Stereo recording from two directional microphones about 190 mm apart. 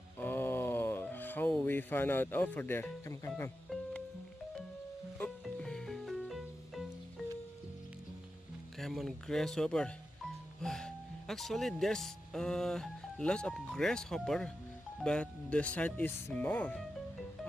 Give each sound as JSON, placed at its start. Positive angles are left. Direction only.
{"t": 0.2, "sound": "groan", "side_deg": 10}
{"t": 5.2, "sound": "music", "side_deg": 5}
{"t": 8.7, "sound": "speech", "side_deg": 0}